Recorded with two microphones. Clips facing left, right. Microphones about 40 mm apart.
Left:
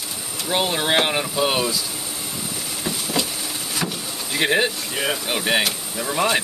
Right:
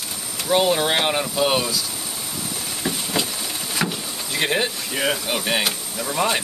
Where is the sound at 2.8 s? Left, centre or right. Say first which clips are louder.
Even; centre.